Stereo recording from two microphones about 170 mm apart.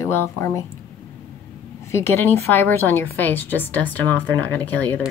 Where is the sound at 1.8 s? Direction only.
15° left (ahead or behind).